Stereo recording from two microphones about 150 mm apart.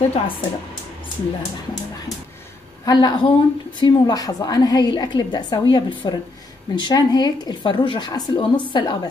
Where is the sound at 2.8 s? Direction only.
25° left (ahead or behind).